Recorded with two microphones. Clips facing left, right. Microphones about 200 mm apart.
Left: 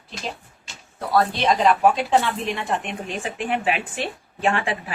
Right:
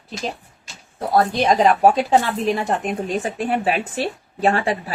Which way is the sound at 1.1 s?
45° right (ahead or behind).